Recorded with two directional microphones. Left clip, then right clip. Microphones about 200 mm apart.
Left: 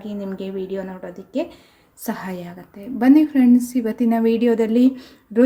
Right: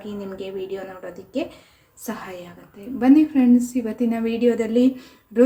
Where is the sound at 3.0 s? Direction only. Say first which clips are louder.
Left 2 dB; 35° left (ahead or behind).